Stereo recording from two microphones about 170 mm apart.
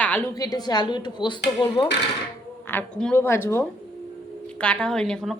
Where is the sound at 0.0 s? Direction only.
10° left (ahead or behind).